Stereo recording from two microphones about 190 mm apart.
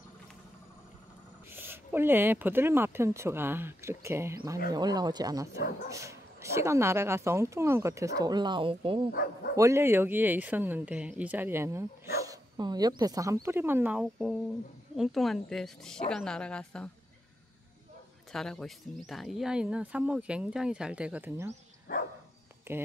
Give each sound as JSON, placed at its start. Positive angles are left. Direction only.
{"t": 1.5, "sound": "speech", "side_deg": -10}
{"t": 9.1, "sound": "speech", "side_deg": 55}
{"t": 9.6, "sound": "speech", "side_deg": -15}
{"t": 18.3, "sound": "speech", "side_deg": 0}
{"t": 21.9, "sound": "dog", "side_deg": 45}
{"t": 22.7, "sound": "speech", "side_deg": -15}